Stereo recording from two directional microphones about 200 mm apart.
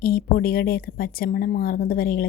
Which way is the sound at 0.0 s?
50° left (ahead or behind).